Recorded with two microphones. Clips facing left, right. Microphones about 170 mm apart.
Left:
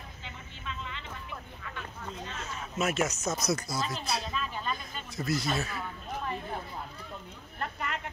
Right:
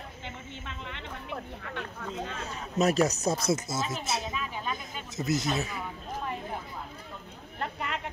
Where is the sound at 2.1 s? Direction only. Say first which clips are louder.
Right 7 dB; 55° right (ahead or behind).